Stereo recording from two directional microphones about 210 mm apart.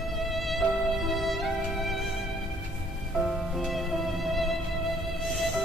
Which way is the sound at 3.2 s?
Centre (ahead or behind).